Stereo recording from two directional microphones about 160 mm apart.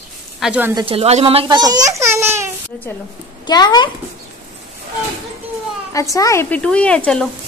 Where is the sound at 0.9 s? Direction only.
40° right (ahead or behind); by 2.5 s 15° right (ahead or behind).